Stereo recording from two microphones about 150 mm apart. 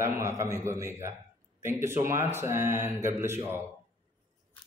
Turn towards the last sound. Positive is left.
turn(degrees=-15)  # may be behind; listen again after turning